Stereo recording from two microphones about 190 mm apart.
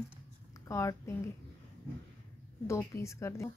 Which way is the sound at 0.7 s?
15° left (ahead or behind).